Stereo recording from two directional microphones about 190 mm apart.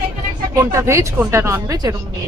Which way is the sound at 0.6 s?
15° right (ahead or behind).